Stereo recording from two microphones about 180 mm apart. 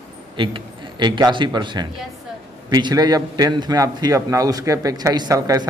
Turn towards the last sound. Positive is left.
turn(degrees=-20)  # may be behind; listen again after turning